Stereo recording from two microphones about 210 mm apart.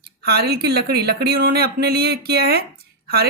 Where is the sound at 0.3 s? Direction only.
50° right (ahead or behind).